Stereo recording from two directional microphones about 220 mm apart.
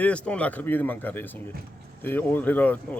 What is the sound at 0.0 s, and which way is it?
Speech, 5° left (ahead or behind).